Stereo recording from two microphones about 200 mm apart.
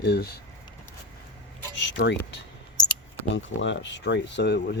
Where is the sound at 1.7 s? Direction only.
60° left (ahead or behind).